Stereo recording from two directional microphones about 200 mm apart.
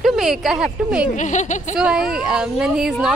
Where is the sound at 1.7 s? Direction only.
5° right (ahead or behind).